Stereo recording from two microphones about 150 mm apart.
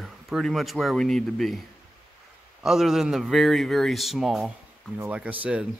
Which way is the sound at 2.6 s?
Centre (ahead or behind).